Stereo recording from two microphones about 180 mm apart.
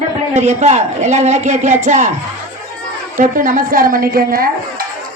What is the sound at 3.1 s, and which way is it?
A woman's voice, 45° right (ahead or behind).